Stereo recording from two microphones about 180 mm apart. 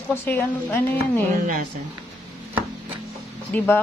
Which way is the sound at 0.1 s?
15° left (ahead or behind).